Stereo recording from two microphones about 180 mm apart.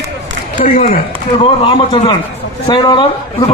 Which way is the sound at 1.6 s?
30° left (ahead or behind).